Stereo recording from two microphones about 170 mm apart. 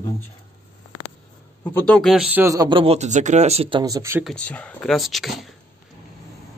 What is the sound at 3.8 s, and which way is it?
Speech, 20° right (ahead or behind).